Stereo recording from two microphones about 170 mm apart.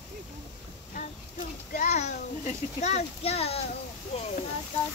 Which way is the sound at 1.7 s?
45° left (ahead or behind).